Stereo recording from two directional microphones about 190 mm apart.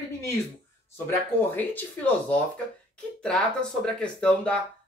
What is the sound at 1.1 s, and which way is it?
Speech, 10° left (ahead or behind).